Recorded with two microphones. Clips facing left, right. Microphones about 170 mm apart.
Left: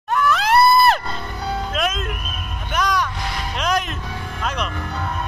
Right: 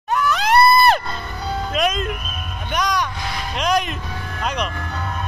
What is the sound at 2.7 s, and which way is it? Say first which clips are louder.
Vehicle: even; centre (ahead or behind).